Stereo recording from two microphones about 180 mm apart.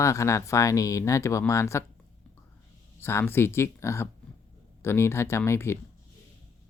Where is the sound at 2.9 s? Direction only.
15° left (ahead or behind).